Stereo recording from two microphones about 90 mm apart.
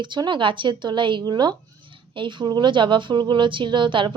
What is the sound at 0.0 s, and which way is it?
A woman's voice, 60° right (ahead or behind).